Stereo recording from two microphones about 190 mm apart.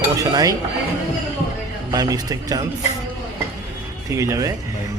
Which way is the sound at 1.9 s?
20° right (ahead or behind).